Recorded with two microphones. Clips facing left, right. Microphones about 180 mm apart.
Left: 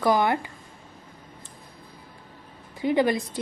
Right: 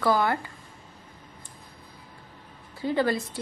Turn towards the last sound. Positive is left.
turn(degrees=15)  # may be behind; listen again after turning